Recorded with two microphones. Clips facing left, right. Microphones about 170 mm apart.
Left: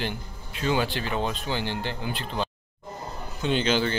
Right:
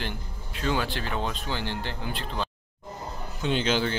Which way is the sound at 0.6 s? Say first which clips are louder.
Left 2 dB; 5° left (ahead or behind).